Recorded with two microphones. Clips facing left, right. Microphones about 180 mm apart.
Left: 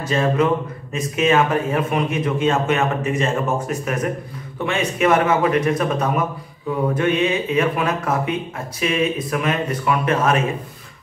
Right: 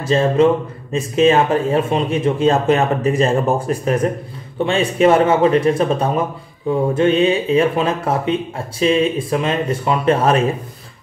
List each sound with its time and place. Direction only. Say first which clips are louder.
0.0 s speech: right 5 dB; 30° right (ahead or behind)